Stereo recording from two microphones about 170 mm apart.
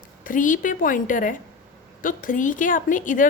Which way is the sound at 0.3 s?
50° left (ahead or behind).